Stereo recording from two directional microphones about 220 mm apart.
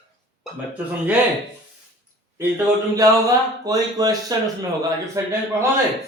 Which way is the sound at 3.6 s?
15° right (ahead or behind).